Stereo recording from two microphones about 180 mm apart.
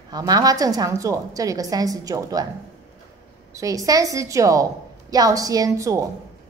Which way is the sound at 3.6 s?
20° right (ahead or behind).